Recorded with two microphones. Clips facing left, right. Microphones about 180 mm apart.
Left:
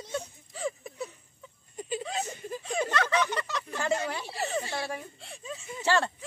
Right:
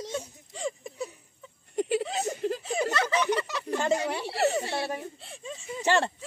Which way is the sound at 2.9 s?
5° right (ahead or behind).